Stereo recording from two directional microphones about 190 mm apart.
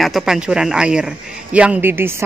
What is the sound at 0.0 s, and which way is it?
A man's voice, centre (ahead or behind).